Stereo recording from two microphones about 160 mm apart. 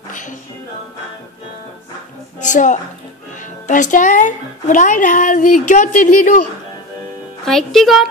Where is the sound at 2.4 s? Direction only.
50° left (ahead or behind).